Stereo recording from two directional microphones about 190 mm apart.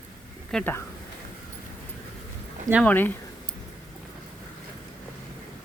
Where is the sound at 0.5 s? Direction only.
10° left (ahead or behind).